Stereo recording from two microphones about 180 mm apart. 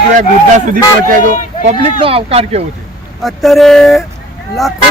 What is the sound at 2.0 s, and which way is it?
Speech, 30° right (ahead or behind).